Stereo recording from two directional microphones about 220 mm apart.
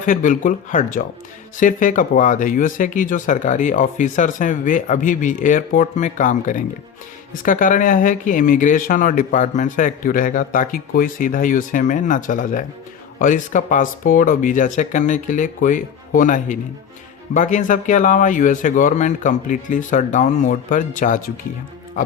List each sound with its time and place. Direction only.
0.0 s speech: 35° left (ahead or behind)